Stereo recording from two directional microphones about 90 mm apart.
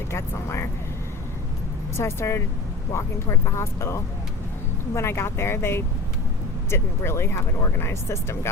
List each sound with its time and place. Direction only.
0.1 s speech: 30° left (ahead or behind)
2.0 s speech: 30° left (ahead or behind)